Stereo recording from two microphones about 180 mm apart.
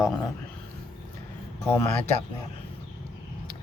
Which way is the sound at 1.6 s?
10° left (ahead or behind).